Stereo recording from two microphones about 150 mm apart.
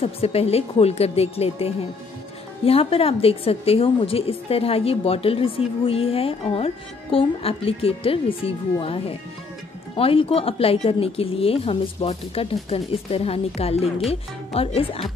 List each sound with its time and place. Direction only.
0.0 s a woman's voice: 40° left (ahead or behind)